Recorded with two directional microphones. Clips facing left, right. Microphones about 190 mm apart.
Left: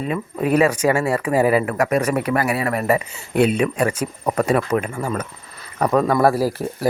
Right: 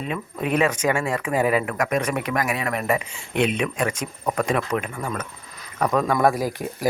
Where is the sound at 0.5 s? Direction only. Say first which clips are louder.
Left 4 dB; 10° left (ahead or behind).